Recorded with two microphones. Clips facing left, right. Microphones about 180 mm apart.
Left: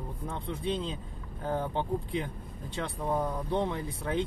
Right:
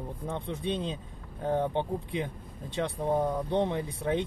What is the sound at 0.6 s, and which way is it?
Speech, 20° right (ahead or behind).